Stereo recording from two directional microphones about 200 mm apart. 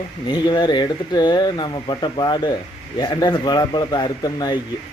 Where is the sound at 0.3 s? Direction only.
20° left (ahead or behind).